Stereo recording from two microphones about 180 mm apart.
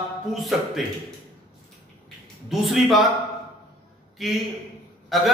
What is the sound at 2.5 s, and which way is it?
Speech, centre (ahead or behind).